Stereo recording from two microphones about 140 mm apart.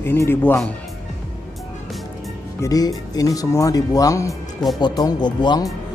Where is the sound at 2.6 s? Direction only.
25° left (ahead or behind).